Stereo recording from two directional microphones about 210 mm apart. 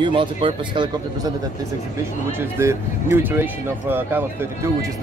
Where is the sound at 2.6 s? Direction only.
10° right (ahead or behind).